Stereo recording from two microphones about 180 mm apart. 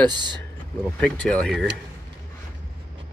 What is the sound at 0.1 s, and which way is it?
Speech, 25° right (ahead or behind).